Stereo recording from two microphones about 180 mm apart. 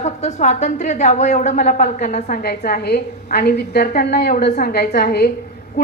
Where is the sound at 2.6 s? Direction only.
60° left (ahead or behind).